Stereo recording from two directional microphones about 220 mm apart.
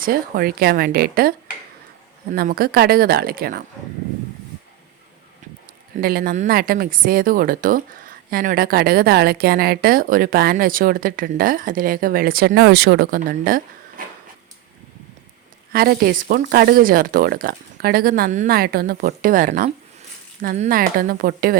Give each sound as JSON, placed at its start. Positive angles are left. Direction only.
{"t": 0.0, "sound": "speech", "side_deg": -40}
{"t": 2.3, "sound": "speech", "side_deg": -45}
{"t": 6.0, "sound": "speech", "side_deg": -45}
{"t": 15.7, "sound": "speech", "side_deg": -45}